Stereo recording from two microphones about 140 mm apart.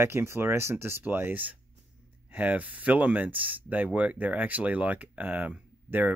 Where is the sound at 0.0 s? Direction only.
20° right (ahead or behind).